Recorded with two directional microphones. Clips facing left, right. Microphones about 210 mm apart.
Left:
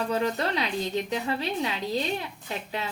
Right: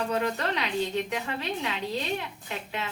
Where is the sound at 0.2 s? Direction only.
35° left (ahead or behind).